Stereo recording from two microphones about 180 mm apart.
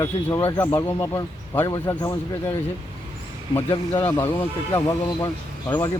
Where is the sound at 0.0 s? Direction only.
15° left (ahead or behind).